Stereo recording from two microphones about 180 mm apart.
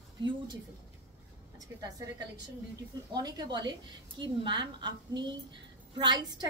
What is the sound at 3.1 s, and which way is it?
A woman's voice, 20° right (ahead or behind).